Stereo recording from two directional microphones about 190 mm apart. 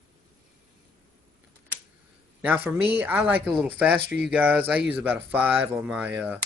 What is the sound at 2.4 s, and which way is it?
Speech, 10° right (ahead or behind).